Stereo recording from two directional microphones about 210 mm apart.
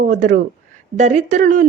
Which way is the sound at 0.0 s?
35° right (ahead or behind).